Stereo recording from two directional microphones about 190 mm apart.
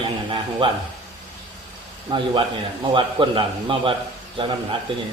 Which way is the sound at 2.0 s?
25° right (ahead or behind).